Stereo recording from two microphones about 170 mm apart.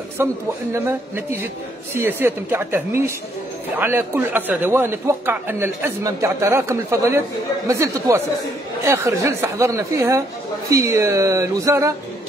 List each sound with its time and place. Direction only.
0.2 s a man's voice: 15° right (ahead or behind)